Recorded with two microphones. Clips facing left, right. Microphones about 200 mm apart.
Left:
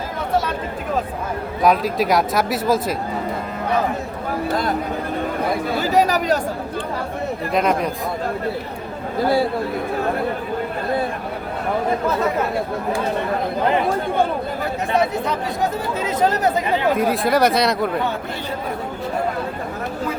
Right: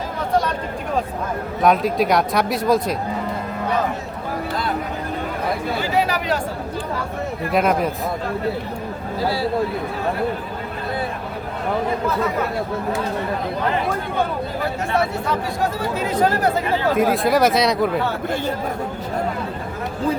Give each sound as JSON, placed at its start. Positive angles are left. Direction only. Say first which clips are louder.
{"t": 1.6, "sound": "speech", "louder": "even", "side_deg": 0}
{"t": 5.8, "sound": "speech", "louder": "left 5 dB", "side_deg": 40}
{"t": 7.5, "sound": "speech", "louder": "right 1 dB", "side_deg": -5}
{"t": 16.0, "sound": "speech", "louder": "even", "side_deg": 20}
{"t": 17.0, "sound": "speech", "louder": "right 3 dB", "side_deg": 0}